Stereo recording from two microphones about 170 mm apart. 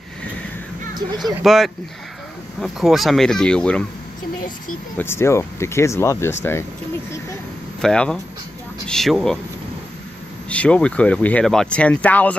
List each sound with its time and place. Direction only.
1.2 s speech: centre (ahead or behind)
4.9 s speech: 15° left (ahead or behind)
7.8 s speech: 5° left (ahead or behind)
10.5 s speech: 5° left (ahead or behind)